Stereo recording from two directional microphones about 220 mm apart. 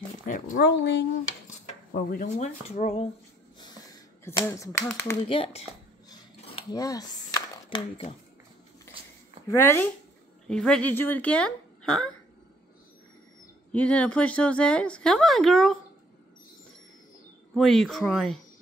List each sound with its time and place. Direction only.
0.2 s speech: 40° left (ahead or behind)
1.5 s speech: 40° left (ahead or behind)
4.2 s speech: 10° left (ahead or behind)
5.3 s dishes: 25° left (ahead or behind)
9.5 s speech: 10° left (ahead or behind)
13.7 s speech: 5° left (ahead or behind)
17.6 s speech: centre (ahead or behind)